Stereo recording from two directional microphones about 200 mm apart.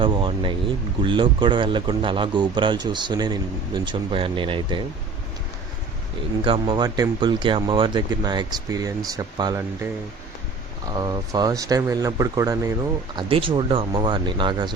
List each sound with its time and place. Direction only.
0.0 s speech: 25° right (ahead or behind)
6.4 s speech: 25° right (ahead or behind)
10.9 s speech: 20° right (ahead or behind)
13.1 s speech: 25° right (ahead or behind)